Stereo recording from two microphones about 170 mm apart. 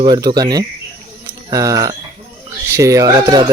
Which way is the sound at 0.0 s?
25° right (ahead or behind).